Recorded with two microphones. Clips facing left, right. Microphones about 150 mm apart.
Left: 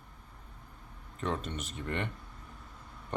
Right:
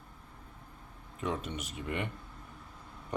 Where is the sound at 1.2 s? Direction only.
10° right (ahead or behind).